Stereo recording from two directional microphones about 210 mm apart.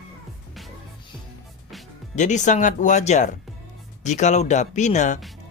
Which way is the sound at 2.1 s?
35° left (ahead or behind).